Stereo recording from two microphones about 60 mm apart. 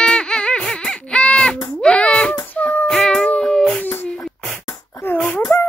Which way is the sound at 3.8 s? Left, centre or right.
Left.